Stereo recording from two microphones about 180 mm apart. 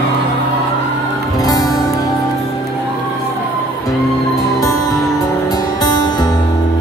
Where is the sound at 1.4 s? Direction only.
20° left (ahead or behind).